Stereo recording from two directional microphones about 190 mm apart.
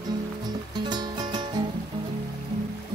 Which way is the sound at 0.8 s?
20° right (ahead or behind).